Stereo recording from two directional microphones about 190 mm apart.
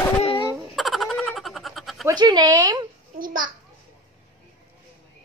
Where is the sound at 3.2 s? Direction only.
45° right (ahead or behind).